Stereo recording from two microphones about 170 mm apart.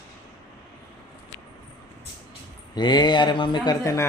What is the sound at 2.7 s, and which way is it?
Speech, 25° left (ahead or behind).